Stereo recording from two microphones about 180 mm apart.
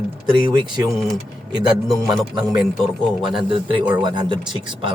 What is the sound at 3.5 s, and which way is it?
A man's voice, 30° right (ahead or behind).